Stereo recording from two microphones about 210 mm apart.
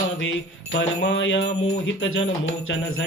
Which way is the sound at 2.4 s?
65° left (ahead or behind).